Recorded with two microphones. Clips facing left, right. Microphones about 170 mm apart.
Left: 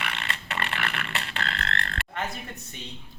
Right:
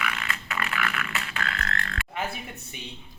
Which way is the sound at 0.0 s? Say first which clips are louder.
Right 2 dB; 30° left (ahead or behind).